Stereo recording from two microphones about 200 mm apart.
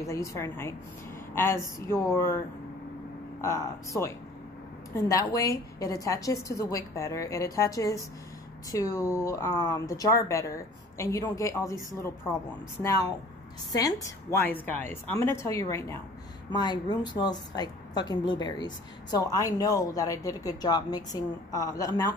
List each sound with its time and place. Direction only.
0.0 s speech: 15° left (ahead or behind)
13.7 s a woman's voice: 15° left (ahead or behind)